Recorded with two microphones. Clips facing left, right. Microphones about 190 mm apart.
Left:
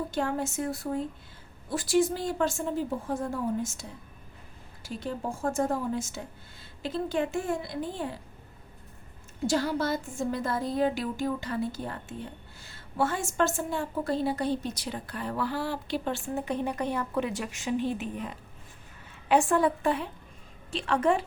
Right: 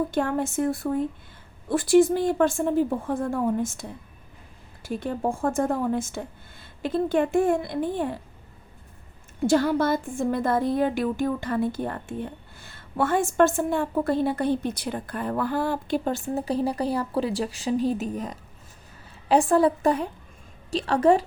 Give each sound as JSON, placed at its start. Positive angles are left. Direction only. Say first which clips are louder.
{"t": 0.1, "sound": "a woman's voice", "louder": "right 5 dB", "side_deg": -55}
{"t": 9.5, "sound": "a woman's voice", "louder": "right 6 dB", "side_deg": -55}